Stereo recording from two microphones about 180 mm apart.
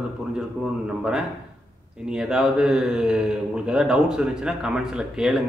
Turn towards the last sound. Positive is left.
turn(degrees=-5)  # may be behind; listen again after turning